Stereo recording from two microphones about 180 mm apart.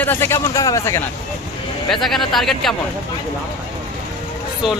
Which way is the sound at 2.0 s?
Centre (ahead or behind).